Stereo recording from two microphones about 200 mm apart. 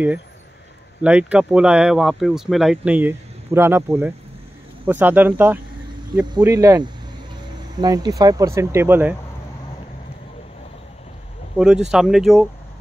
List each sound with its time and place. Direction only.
1.0 s speech: 5° right (ahead or behind)
11.5 s speech: 5° right (ahead or behind)